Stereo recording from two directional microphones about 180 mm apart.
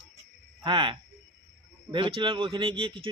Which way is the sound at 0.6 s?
30° right (ahead or behind).